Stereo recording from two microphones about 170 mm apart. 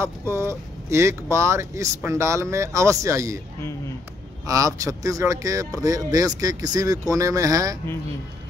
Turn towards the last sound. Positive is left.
turn(degrees=-20)  # may be behind; listen again after turning